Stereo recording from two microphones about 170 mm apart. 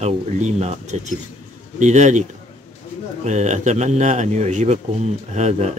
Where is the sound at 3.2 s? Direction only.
45° right (ahead or behind).